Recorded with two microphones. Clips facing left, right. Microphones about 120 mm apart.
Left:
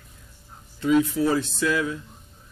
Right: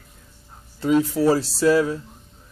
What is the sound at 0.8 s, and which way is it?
Speech, 35° right (ahead or behind).